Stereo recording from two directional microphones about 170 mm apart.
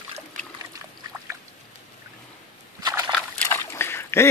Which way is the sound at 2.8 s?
25° right (ahead or behind).